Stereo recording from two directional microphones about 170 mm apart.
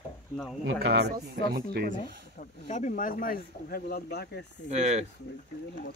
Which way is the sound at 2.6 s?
45° left (ahead or behind).